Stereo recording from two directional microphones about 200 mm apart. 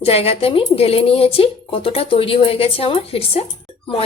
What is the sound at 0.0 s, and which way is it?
Speech, 30° left (ahead or behind).